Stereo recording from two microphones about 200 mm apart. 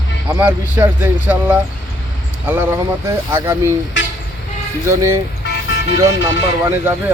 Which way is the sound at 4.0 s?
65° left (ahead or behind).